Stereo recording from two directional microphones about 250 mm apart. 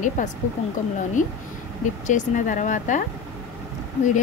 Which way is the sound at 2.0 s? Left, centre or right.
Left.